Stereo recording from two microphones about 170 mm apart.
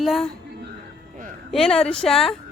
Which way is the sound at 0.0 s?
Centre (ahead or behind).